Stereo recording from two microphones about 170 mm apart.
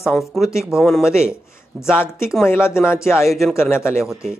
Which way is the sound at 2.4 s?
15° left (ahead or behind).